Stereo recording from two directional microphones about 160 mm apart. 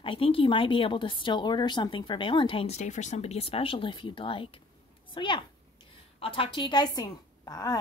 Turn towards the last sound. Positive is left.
turn(degrees=25)  # may be behind; listen again after turning